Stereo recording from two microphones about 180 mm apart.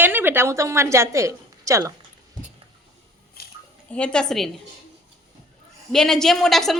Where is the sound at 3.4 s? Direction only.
60° left (ahead or behind).